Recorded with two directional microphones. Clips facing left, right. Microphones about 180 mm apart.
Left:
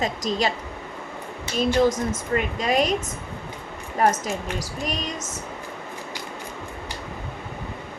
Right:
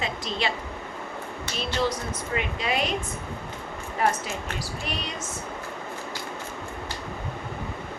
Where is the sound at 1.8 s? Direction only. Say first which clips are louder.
Left 5 dB; 45° left (ahead or behind).